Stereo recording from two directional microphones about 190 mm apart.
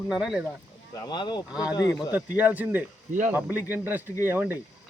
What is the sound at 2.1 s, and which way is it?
Speech, 10° right (ahead or behind).